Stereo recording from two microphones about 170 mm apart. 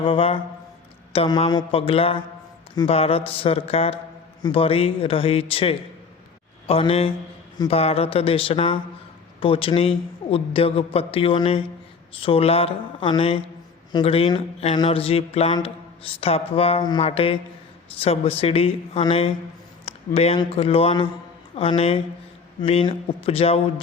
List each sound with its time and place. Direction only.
0.0 s a man's voice: 35° left (ahead or behind)
19.8 s a sound: 35° left (ahead or behind)
20.4 s a man's voice: 35° left (ahead or behind)